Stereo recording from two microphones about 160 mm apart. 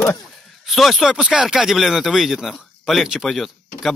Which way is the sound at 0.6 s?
Centre (ahead or behind).